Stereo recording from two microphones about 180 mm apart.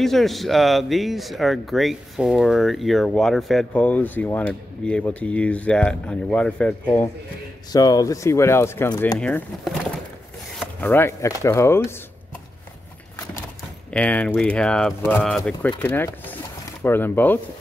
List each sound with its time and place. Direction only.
0.0 s speech: centre (ahead or behind)
7.7 s speech: 20° left (ahead or behind)
13.9 s speech: 5° left (ahead or behind)